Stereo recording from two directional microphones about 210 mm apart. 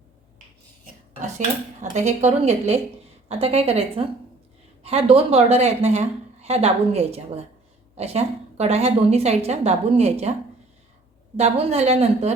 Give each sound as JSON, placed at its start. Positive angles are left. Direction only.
{"t": 1.8, "sound": "a woman's voice", "side_deg": -35}
{"t": 11.3, "sound": "a woman's voice", "side_deg": -30}